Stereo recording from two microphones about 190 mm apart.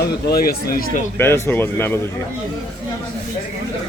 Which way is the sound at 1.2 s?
15° left (ahead or behind).